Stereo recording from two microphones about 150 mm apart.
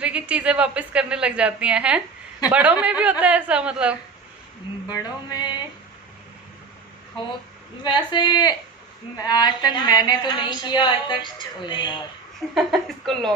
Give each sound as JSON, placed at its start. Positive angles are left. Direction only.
{"t": 0.0, "sound": "a woman's voice", "side_deg": -10}
{"t": 4.8, "sound": "a woman's voice", "side_deg": 25}
{"t": 7.8, "sound": "a woman's voice", "side_deg": 30}
{"t": 12.5, "sound": "speech", "side_deg": 0}